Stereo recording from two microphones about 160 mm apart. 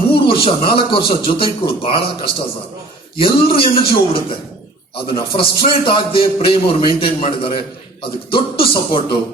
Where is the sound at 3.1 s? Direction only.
35° left (ahead or behind).